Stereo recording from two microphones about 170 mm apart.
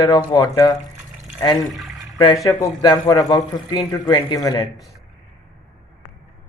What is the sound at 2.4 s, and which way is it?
A man's voice, 20° left (ahead or behind).